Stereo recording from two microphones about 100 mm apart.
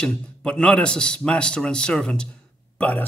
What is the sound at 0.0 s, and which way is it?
Speech, 10° left (ahead or behind).